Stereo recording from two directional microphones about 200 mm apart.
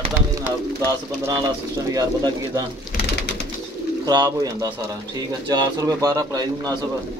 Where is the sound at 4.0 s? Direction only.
20° right (ahead or behind).